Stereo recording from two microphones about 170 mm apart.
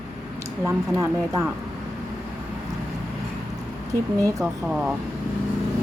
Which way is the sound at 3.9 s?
20° right (ahead or behind).